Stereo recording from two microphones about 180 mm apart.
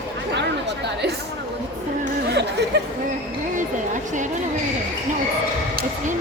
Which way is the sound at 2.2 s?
70° right (ahead or behind).